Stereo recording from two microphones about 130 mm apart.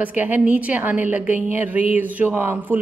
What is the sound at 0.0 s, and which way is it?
A woman's voice, 10° right (ahead or behind).